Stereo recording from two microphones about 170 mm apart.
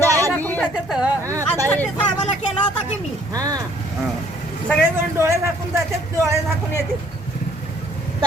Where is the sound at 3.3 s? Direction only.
20° right (ahead or behind).